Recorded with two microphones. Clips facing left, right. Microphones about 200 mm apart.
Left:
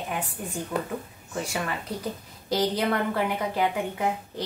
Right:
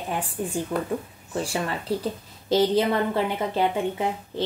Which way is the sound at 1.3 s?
30° right (ahead or behind).